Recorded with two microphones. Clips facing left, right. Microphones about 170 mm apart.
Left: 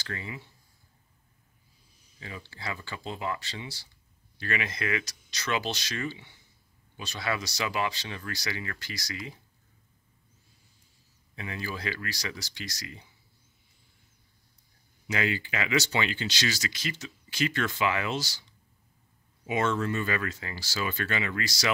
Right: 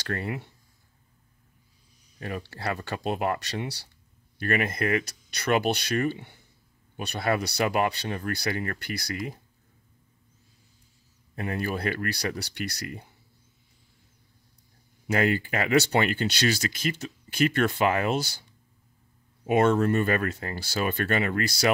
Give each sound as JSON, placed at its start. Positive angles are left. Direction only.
{"t": 0.0, "sound": "speech", "side_deg": -60}
{"t": 2.1, "sound": "speech", "side_deg": -60}
{"t": 4.4, "sound": "speech", "side_deg": -50}
{"t": 11.3, "sound": "speech", "side_deg": -55}
{"t": 15.0, "sound": "speech", "side_deg": -55}
{"t": 19.4, "sound": "speech", "side_deg": -55}